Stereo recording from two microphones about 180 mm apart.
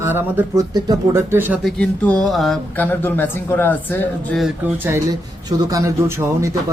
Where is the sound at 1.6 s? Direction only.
5° left (ahead or behind).